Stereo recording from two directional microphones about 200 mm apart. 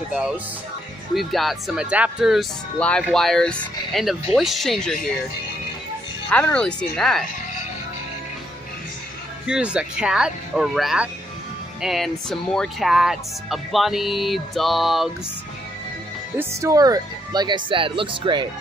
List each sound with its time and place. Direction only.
1.1 s speech: centre (ahead or behind)
6.3 s speech: 5° left (ahead or behind)
9.5 s speech: 5° right (ahead or behind)
16.3 s speech: 15° right (ahead or behind)